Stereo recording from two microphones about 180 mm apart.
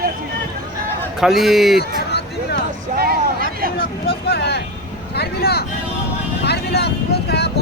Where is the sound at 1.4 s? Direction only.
Centre (ahead or behind).